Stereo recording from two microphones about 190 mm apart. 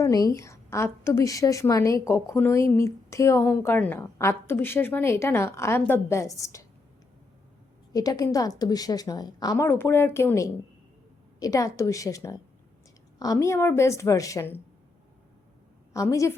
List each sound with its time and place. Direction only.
0.0 s a woman's voice: 20° left (ahead or behind)
7.9 s a woman's voice: 20° left (ahead or behind)
15.9 s a woman's voice: 15° left (ahead or behind)